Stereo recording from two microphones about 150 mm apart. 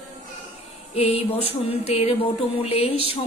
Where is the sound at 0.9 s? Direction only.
40° left (ahead or behind).